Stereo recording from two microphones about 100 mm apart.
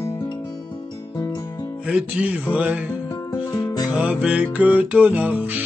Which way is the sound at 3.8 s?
10° right (ahead or behind).